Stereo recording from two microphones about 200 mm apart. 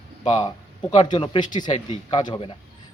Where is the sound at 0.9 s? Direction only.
25° left (ahead or behind).